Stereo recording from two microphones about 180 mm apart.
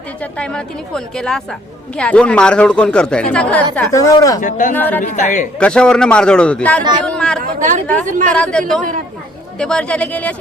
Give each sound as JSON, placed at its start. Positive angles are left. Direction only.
{"t": 0.2, "sound": "speech", "side_deg": 5}
{"t": 3.9, "sound": "speech", "side_deg": 20}
{"t": 4.4, "sound": "speech", "side_deg": 45}
{"t": 4.7, "sound": "speech", "side_deg": 10}
{"t": 5.1, "sound": "speech", "side_deg": 45}
{"t": 5.5, "sound": "speech", "side_deg": 5}
{"t": 7.4, "sound": "speech", "side_deg": -45}
{"t": 8.4, "sound": "speech", "side_deg": 5}